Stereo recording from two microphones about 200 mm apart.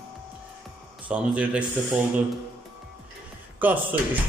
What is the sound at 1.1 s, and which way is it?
Speech, 5° right (ahead or behind).